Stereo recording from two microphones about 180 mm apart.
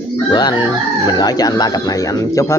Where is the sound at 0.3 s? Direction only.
25° left (ahead or behind).